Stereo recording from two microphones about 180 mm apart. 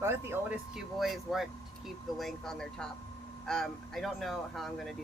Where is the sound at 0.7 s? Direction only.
Centre (ahead or behind).